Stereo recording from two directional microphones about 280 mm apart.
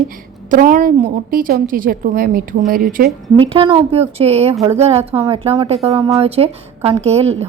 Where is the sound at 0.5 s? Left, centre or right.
Right.